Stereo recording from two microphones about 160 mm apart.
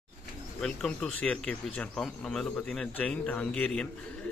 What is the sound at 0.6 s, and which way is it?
A man's voice, 5° left (ahead or behind).